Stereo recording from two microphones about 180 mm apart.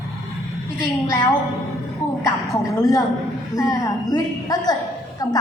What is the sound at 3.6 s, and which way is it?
Speech, 20° left (ahead or behind).